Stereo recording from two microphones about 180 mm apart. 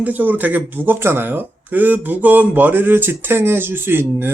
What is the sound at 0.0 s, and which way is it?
Speech, 10° right (ahead or behind).